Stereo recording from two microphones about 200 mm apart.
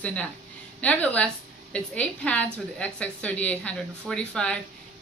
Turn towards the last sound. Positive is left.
turn(degrees=5)  # may be behind; listen again after turning